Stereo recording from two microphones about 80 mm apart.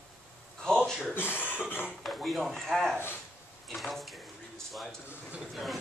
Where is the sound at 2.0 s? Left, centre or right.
Centre.